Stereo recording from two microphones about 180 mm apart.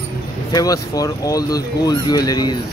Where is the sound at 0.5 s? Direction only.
20° left (ahead or behind).